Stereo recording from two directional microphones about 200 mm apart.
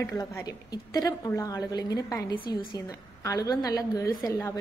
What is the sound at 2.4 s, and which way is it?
Speech, 50° left (ahead or behind).